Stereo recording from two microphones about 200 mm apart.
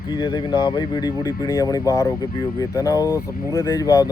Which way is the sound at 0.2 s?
20° left (ahead or behind).